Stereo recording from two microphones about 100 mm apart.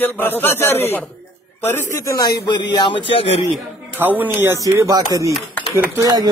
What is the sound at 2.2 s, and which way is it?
Speech, 45° left (ahead or behind).